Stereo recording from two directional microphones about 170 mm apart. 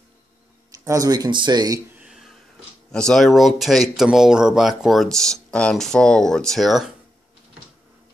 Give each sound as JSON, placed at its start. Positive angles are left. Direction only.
{"t": 0.8, "sound": "speech", "side_deg": -20}
{"t": 2.0, "sound": "a sound", "side_deg": 0}
{"t": 2.9, "sound": "speech", "side_deg": 5}